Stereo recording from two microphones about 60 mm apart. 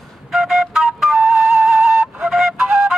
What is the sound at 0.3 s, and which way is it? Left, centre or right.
Flute, centre.